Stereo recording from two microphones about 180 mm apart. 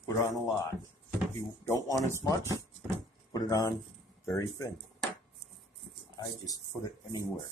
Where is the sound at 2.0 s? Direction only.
15° left (ahead or behind).